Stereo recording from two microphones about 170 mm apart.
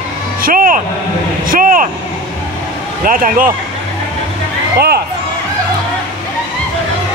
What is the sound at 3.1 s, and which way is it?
Speech, 55° right (ahead or behind).